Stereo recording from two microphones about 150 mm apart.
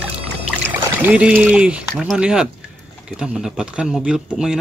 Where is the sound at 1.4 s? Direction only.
10° right (ahead or behind).